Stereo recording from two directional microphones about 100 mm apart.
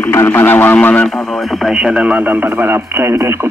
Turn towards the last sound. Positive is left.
turn(degrees=-25)  # may be behind; listen again after turning